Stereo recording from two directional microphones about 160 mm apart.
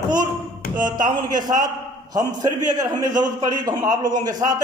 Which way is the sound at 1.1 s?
25° right (ahead or behind).